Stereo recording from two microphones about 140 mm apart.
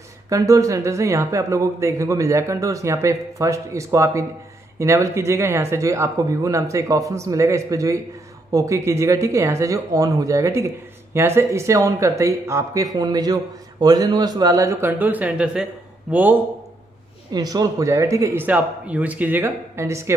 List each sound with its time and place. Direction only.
0.3 s a man's voice: 25° right (ahead or behind)
17.3 s a man's voice: 30° right (ahead or behind)